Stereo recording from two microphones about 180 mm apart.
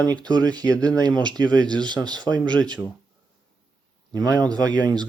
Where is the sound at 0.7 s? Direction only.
5° left (ahead or behind).